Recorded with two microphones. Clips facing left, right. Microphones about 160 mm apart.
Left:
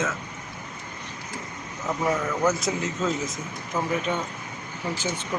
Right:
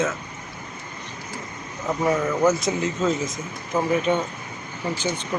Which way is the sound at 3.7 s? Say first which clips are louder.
Right 5 dB; 20° right (ahead or behind).